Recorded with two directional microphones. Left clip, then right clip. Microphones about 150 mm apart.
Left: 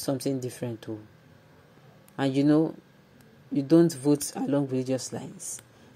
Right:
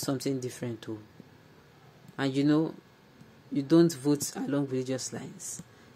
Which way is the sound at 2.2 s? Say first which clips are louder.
Left 4 dB; 15° left (ahead or behind).